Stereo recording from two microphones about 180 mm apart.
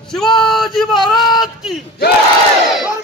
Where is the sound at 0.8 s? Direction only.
Centre (ahead or behind).